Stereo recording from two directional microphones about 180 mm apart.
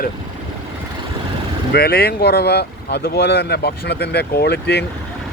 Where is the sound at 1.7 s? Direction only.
60° left (ahead or behind).